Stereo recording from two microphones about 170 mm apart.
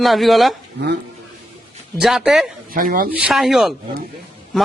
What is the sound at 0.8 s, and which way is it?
Stir, 85° right.